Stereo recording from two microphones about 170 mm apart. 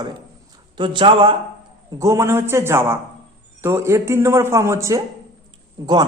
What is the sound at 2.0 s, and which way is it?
A man's voice, 15° right (ahead or behind).